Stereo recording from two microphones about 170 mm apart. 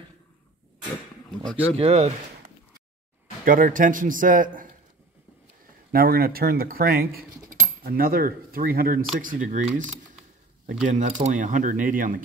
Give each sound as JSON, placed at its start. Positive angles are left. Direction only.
{"t": 1.3, "sound": "speech", "side_deg": 5}
{"t": 1.8, "sound": "speech", "side_deg": -40}
{"t": 3.4, "sound": "a man's voice", "side_deg": -55}
{"t": 5.9, "sound": "a man's voice", "side_deg": -60}
{"t": 10.9, "sound": "a man's voice", "side_deg": -45}